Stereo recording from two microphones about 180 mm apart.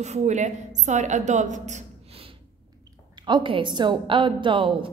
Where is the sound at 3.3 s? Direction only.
25° right (ahead or behind).